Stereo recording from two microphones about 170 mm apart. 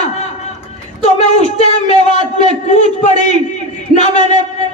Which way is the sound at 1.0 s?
40° left (ahead or behind).